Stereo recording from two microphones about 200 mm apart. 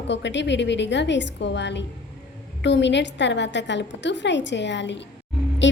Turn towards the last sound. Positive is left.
turn(degrees=65)  # may be behind; listen again after turning